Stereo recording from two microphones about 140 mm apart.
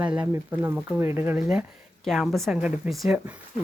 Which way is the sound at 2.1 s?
Centre (ahead or behind).